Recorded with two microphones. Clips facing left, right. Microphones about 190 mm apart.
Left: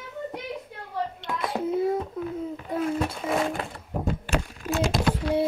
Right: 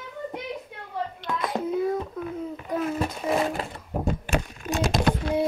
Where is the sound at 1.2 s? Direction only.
25° left (ahead or behind).